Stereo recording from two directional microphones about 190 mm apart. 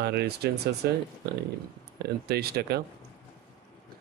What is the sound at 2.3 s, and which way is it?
Speech, 55° right (ahead or behind).